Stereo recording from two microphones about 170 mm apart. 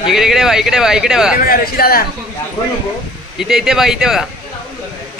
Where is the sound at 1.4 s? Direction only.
60° left (ahead or behind).